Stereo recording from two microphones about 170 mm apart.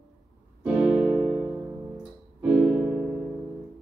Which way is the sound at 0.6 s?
5° right (ahead or behind).